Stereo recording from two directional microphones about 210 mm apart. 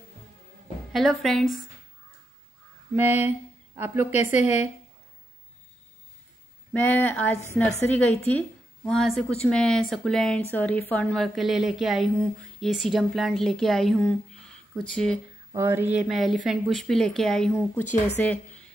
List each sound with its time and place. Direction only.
0.9 s a woman's voice: centre (ahead or behind)
2.9 s a sound: 10° right (ahead or behind)
4.4 s a woman's voice: 35° left (ahead or behind)
6.7 s a woman's voice: 10° left (ahead or behind)
15.5 s a woman's voice: 10° right (ahead or behind); by 18.3 s 5° left (ahead or behind)